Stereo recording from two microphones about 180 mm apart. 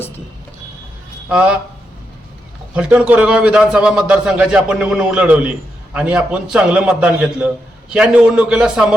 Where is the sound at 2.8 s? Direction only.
5° right (ahead or behind).